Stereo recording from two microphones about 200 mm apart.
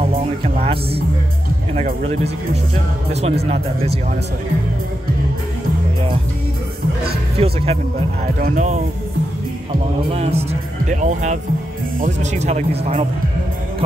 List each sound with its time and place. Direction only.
0.0 s music: 30° right (ahead or behind)
2.0 s speech: 30° right (ahead or behind)
7.3 s speech: 30° right (ahead or behind)